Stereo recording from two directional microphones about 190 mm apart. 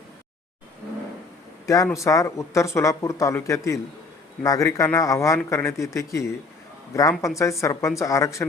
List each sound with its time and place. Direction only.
1.6 s speech: 15° left (ahead or behind)